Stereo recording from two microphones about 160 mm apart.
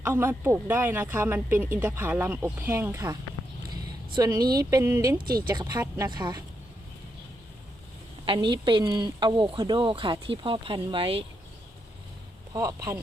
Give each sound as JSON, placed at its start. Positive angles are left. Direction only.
{"t": 0.0, "sound": "speech", "side_deg": -15}
{"t": 5.1, "sound": "speech", "side_deg": -70}
{"t": 5.7, "sound": "a woman's voice", "side_deg": -20}
{"t": 8.2, "sound": "a woman's voice", "side_deg": -30}
{"t": 12.5, "sound": "a woman's voice", "side_deg": -20}